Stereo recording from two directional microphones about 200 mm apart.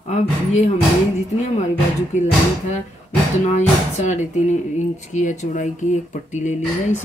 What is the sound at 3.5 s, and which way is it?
Speech, 35° left (ahead or behind).